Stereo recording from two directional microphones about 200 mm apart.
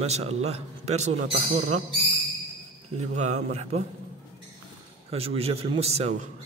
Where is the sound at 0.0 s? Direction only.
30° right (ahead or behind).